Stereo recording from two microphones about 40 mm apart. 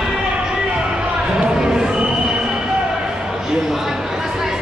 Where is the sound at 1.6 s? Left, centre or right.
Centre.